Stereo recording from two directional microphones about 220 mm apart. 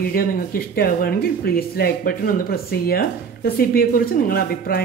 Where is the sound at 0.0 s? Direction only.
40° left (ahead or behind).